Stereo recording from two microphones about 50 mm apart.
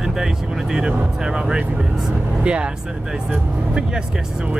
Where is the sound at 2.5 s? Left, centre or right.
Right.